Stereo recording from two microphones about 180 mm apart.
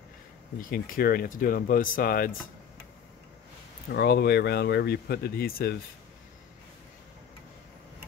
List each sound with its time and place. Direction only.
0.6 s speech: 50° left (ahead or behind)
3.9 s speech: 65° left (ahead or behind)